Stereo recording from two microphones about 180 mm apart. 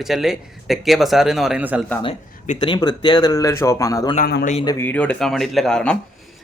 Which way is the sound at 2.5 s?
25° left (ahead or behind).